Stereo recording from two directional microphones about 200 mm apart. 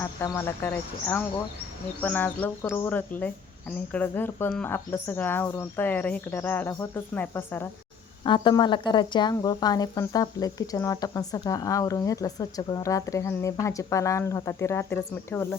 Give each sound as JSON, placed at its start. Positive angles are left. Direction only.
{"t": 0.0, "sound": "speech", "side_deg": 10}
{"t": 2.0, "sound": "speech", "side_deg": 10}
{"t": 8.2, "sound": "speech", "side_deg": 25}